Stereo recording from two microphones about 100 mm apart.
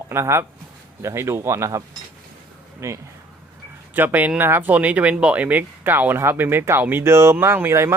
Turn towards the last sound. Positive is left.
turn(degrees=-25)  # may be behind; listen again after turning